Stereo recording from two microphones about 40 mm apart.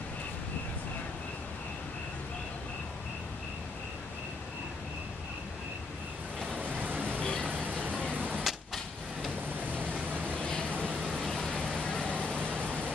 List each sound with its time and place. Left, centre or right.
6.8 s a sound: right
7.2 s vehicle: left
7.5 s vehicle: right
8.0 s arrow: right
9.7 s vehicle: right
10.3 s vehicle: left
11.1 s vehicle: centre
11.5 s vehicle: left